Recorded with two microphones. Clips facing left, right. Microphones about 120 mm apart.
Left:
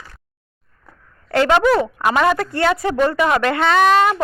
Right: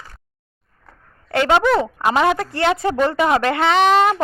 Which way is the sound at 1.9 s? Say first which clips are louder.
Even; 25° right (ahead or behind).